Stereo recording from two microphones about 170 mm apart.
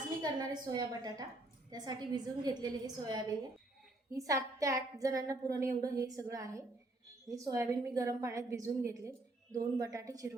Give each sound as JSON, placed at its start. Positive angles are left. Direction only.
{"t": 0.2, "sound": "a woman's voice", "side_deg": -25}